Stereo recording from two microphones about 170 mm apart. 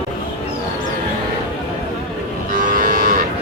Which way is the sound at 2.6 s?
55° right (ahead or behind).